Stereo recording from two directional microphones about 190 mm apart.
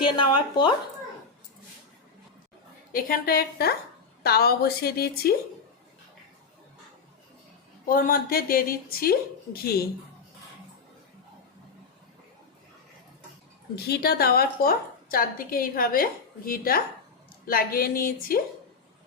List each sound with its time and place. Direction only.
0.0 s speech: 25° left (ahead or behind)
2.9 s a woman's voice: 50° left (ahead or behind)
7.9 s a woman's voice: 50° left (ahead or behind)
13.7 s a woman's voice: 55° left (ahead or behind)